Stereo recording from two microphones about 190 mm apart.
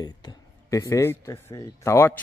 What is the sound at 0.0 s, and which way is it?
A man's voice, 20° left (ahead or behind).